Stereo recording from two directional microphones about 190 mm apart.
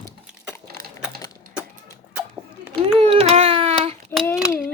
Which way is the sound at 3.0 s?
30° right (ahead or behind).